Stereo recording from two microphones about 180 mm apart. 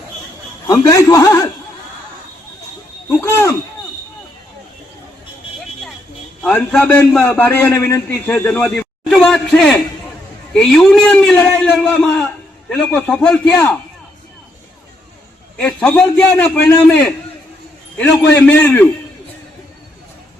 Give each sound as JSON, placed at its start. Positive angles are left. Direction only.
{"t": 0.7, "sound": "a man's voice", "side_deg": 20}
{"t": 3.1, "sound": "a man's voice", "side_deg": 15}
{"t": 6.4, "sound": "a man's voice", "side_deg": 10}
{"t": 15.5, "sound": "a man's voice", "side_deg": 5}